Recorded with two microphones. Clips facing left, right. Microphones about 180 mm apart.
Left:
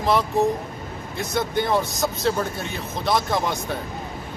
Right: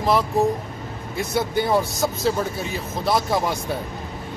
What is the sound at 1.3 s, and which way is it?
Speech, 10° right (ahead or behind).